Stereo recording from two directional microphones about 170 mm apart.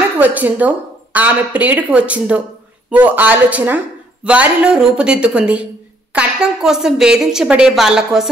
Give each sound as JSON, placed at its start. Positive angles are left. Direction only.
{"t": 0.2, "sound": "a woman's voice", "side_deg": -10}